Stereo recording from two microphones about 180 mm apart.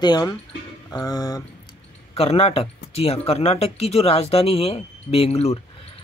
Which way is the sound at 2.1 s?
35° left (ahead or behind).